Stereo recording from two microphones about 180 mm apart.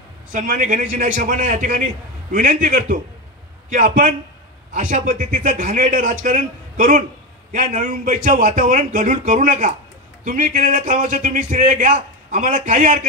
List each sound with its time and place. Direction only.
0.3 s a man's voice: 45° right (ahead or behind)